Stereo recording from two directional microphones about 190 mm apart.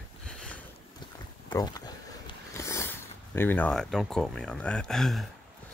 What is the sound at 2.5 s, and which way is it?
Speech, 15° left (ahead or behind).